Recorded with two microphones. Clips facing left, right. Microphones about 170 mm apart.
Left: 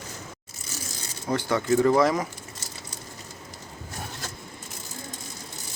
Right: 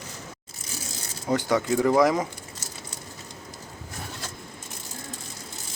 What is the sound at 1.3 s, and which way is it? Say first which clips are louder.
Speech: even; 15° right (ahead or behind).